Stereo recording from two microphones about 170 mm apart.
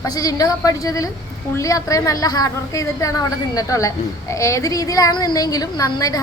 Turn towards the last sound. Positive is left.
turn(degrees=20)  # may be behind; listen again after turning